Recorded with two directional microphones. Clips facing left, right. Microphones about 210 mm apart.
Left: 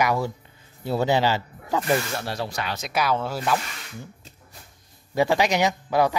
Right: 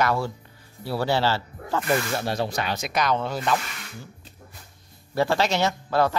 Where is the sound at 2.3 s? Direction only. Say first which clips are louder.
Right 3 dB; 20° right (ahead or behind).